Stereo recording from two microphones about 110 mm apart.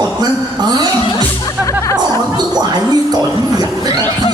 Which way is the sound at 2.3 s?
40° right (ahead or behind).